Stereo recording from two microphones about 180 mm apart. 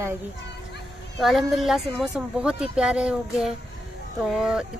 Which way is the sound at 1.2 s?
Centre (ahead or behind).